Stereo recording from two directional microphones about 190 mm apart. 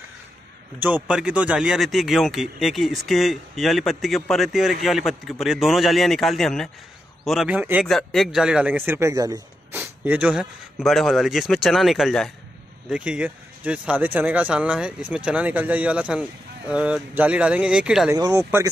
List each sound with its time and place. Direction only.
0.7 s speech: 10° right (ahead or behind)
18.1 s speech: 15° right (ahead or behind)